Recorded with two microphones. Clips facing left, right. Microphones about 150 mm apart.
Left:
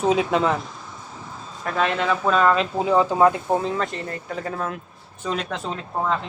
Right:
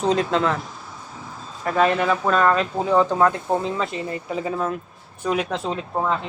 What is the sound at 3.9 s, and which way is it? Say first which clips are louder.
Speech: right 3 dB; 5° right (ahead or behind).